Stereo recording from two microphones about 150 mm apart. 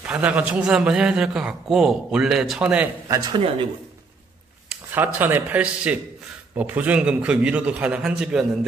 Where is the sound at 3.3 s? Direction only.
35° right (ahead or behind).